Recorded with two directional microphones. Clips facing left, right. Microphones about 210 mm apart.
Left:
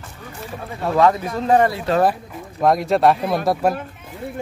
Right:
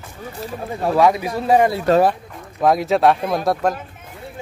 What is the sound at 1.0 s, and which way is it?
Speech, 10° right (ahead or behind).